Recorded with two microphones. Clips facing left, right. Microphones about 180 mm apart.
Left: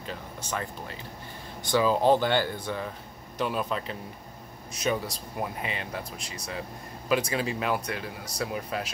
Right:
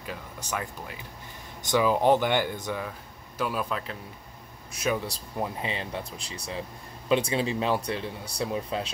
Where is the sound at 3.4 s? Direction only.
5° right (ahead or behind).